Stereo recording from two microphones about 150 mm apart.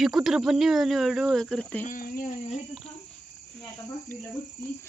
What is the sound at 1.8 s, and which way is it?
Speech, 70° left (ahead or behind).